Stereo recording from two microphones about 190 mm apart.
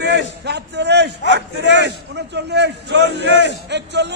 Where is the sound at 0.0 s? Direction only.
60° right (ahead or behind).